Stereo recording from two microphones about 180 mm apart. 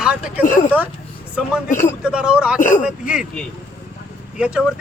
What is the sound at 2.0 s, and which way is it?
Speech, 5° right (ahead or behind).